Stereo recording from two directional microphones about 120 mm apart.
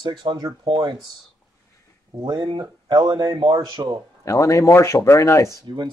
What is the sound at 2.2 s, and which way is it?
Speech, 35° right (ahead or behind).